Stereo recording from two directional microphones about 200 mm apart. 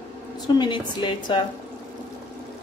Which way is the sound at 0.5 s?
25° left (ahead or behind).